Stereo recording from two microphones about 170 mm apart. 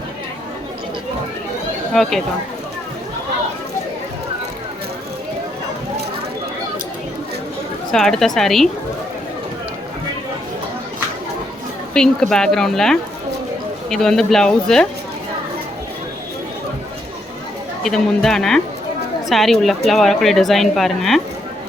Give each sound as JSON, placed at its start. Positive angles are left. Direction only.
{"t": 1.9, "sound": "speech", "side_deg": 0}
{"t": 7.9, "sound": "speech", "side_deg": 0}
{"t": 11.9, "sound": "speech", "side_deg": 5}
{"t": 17.8, "sound": "speech", "side_deg": 5}